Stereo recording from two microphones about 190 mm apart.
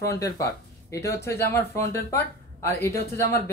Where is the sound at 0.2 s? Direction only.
15° left (ahead or behind).